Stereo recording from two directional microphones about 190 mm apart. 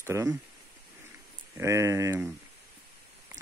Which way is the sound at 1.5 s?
15° right (ahead or behind).